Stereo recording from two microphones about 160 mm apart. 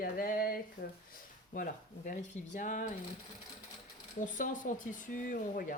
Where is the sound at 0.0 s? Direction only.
65° left (ahead or behind).